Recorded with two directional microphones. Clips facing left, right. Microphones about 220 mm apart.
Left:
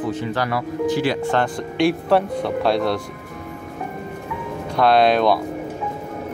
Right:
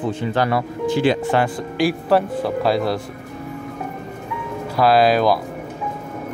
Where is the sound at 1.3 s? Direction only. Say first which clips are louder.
Right 1 dB; 5° right (ahead or behind).